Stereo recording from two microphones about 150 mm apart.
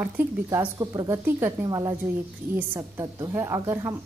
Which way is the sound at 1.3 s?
15° right (ahead or behind).